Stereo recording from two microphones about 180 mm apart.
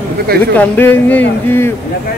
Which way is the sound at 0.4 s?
10° left (ahead or behind).